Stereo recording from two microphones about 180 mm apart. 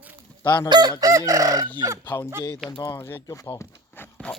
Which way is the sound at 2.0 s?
15° left (ahead or behind).